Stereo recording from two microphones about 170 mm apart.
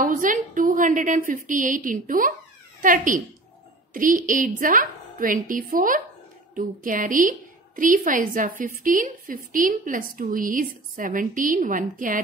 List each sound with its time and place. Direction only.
0.0 s a woman's voice: 50° right (ahead or behind)